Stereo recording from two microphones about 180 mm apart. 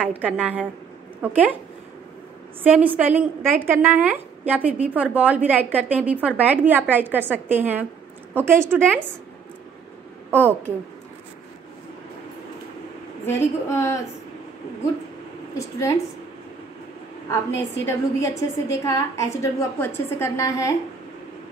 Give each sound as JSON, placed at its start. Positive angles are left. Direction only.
{"t": 0.2, "sound": "a woman's voice", "side_deg": -5}
{"t": 2.6, "sound": "a woman's voice", "side_deg": -10}
{"t": 10.3, "sound": "a woman's voice", "side_deg": -10}
{"t": 13.3, "sound": "a woman's voice", "side_deg": 15}
{"t": 15.5, "sound": "a woman's voice", "side_deg": 20}
{"t": 17.8, "sound": "a woman's voice", "side_deg": 15}